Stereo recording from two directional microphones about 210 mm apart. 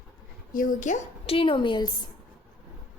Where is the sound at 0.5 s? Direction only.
35° left (ahead or behind).